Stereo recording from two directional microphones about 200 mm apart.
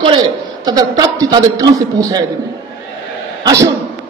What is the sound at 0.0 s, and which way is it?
A man's voice, 20° right (ahead or behind).